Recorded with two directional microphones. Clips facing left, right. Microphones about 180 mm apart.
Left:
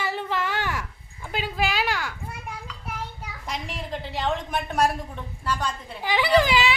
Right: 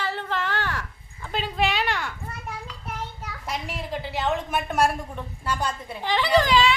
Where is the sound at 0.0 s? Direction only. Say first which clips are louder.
Left 1 dB; 10° left (ahead or behind).